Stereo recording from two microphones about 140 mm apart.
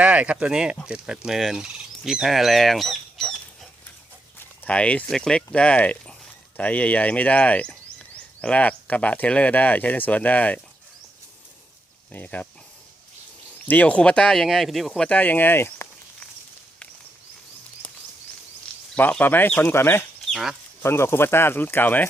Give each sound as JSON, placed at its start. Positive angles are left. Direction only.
{"t": 0.0, "sound": "speech", "side_deg": -10}
{"t": 12.1, "sound": "speech", "side_deg": 10}
{"t": 13.7, "sound": "speech", "side_deg": 10}
{"t": 18.9, "sound": "speech", "side_deg": 10}
{"t": 20.3, "sound": "speech", "side_deg": 0}
{"t": 20.8, "sound": "speech", "side_deg": 20}